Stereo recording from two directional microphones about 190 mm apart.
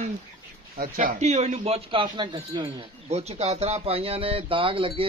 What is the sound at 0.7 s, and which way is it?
A man's voice, 50° right (ahead or behind).